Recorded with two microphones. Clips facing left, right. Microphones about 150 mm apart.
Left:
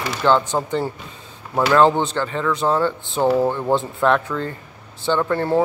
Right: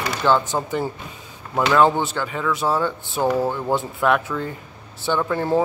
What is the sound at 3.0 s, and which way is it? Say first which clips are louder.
Speech: left 3 dB; 20° left (ahead or behind).